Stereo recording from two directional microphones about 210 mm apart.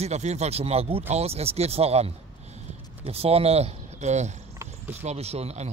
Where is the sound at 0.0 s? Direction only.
30° right (ahead or behind).